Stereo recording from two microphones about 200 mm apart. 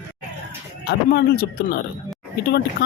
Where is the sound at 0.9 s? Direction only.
55° left (ahead or behind).